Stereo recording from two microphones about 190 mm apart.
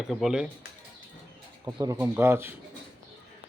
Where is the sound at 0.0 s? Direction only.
Centre (ahead or behind).